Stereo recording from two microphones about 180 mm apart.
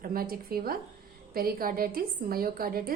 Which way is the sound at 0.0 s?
55° right (ahead or behind).